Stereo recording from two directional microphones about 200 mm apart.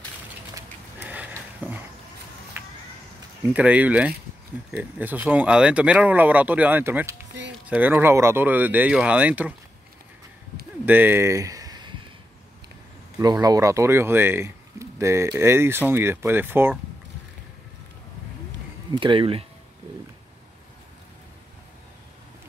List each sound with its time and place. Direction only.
1.0 s a sound: 5° right (ahead or behind)
3.5 s speech: 5° right (ahead or behind)
10.9 s speech: 10° right (ahead or behind)
13.2 s speech: 20° right (ahead or behind)
18.9 s speech: 25° right (ahead or behind)